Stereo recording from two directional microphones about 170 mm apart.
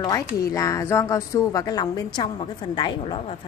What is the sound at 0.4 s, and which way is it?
A woman's voice, 20° left (ahead or behind).